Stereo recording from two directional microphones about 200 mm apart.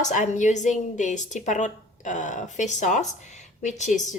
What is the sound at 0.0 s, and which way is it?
A woman's voice, 40° left (ahead or behind).